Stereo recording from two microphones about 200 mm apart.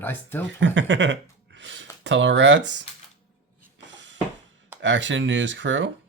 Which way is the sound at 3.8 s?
65° right (ahead or behind).